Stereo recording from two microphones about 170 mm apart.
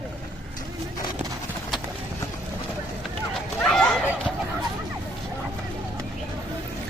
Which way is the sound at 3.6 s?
5° left (ahead or behind).